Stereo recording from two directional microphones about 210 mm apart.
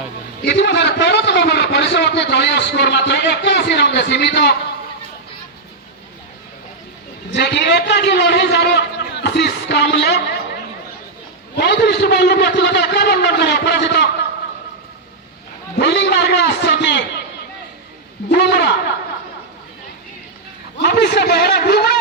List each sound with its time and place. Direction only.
0.4 s a man's voice: 55° left (ahead or behind)
7.3 s a man's voice: 55° left (ahead or behind)
15.8 s a man's voice: 55° left (ahead or behind)
18.3 s a man's voice: 50° left (ahead or behind)
20.7 s a man's voice: 50° left (ahead or behind)